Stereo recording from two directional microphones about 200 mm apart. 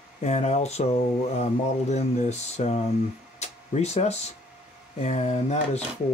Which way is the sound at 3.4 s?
35° left (ahead or behind).